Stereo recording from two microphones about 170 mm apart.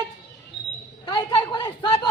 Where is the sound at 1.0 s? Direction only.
25° left (ahead or behind).